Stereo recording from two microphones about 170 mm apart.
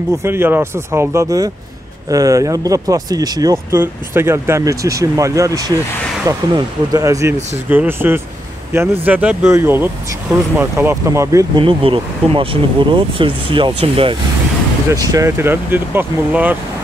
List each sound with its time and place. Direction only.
0.2 s speech: 15° right (ahead or behind)
11.6 s speech: 30° right (ahead or behind)
15.0 s speech: 15° right (ahead or behind)